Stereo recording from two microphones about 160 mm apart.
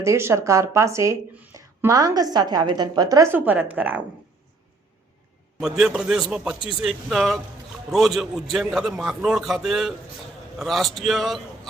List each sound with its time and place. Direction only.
0.0 s speech: 15° right (ahead or behind)
5.5 s a man's voice: centre (ahead or behind)